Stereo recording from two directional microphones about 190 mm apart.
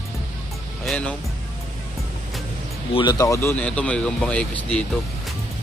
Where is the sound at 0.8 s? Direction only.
5° left (ahead or behind).